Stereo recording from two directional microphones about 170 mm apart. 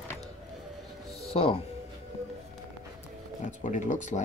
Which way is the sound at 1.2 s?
35° left (ahead or behind).